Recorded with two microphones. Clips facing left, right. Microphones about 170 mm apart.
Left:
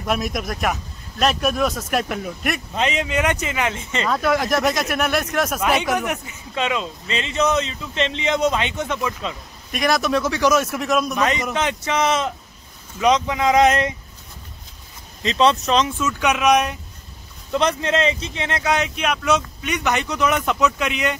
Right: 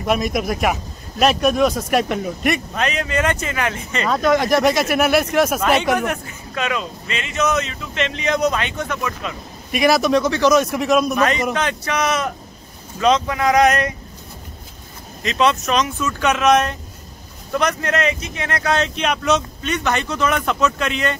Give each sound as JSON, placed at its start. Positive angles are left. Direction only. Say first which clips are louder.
{"t": 0.0, "sound": "speech", "louder": "right 4 dB", "side_deg": 0}
{"t": 2.7, "sound": "speech", "louder": "even", "side_deg": 20}
{"t": 4.1, "sound": "speech", "louder": "right 4 dB", "side_deg": 5}
{"t": 5.9, "sound": "speech", "louder": "right 2 dB", "side_deg": 15}
{"t": 9.7, "sound": "speech", "louder": "right 4 dB", "side_deg": -5}
{"t": 11.1, "sound": "speech", "louder": "right 2 dB", "side_deg": 15}
{"t": 15.2, "sound": "speech", "louder": "left 1 dB", "side_deg": 30}
{"t": 16.1, "sound": "speech", "louder": "right 3 dB", "side_deg": 10}
{"t": 17.5, "sound": "speech", "louder": "even", "side_deg": 25}